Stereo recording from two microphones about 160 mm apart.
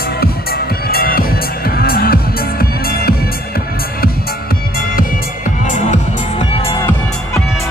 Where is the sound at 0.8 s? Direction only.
70° left (ahead or behind).